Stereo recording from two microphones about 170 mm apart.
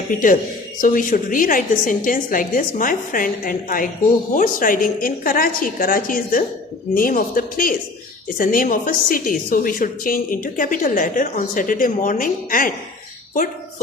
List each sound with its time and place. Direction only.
0.8 s a woman's voice: 50° left (ahead or behind)